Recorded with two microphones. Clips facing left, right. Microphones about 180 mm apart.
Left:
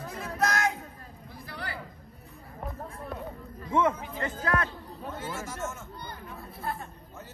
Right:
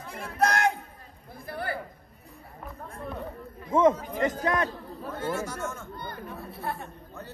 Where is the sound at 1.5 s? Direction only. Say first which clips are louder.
Right 7 dB; 50° right (ahead or behind).